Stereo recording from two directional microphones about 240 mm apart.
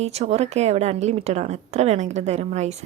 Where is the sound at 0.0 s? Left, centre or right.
Right.